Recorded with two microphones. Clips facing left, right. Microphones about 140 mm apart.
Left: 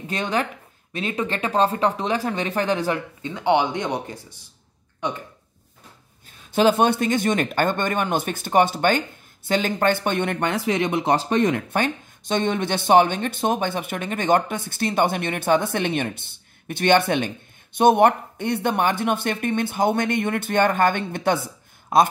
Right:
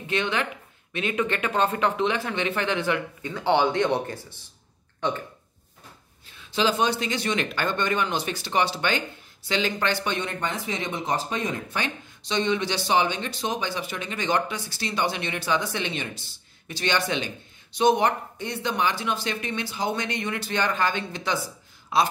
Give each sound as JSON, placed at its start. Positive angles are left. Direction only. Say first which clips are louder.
{"t": 0.0, "sound": "speech", "louder": "left 2 dB", "side_deg": 40}
{"t": 3.2, "sound": "speech", "louder": "left 3 dB", "side_deg": 20}
{"t": 6.3, "sound": "speech", "louder": "left 6 dB", "side_deg": 45}
{"t": 11.7, "sound": "speech", "louder": "left 7 dB", "side_deg": 50}